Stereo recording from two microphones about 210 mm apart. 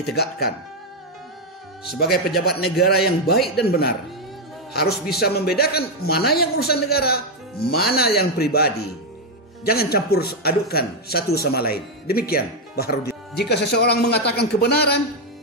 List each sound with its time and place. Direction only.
0.0 s a man's voice: 50° left (ahead or behind)
2.3 s a man's voice: 50° left (ahead or behind)